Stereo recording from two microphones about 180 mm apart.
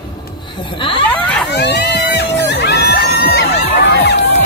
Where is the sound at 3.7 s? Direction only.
70° left (ahead or behind).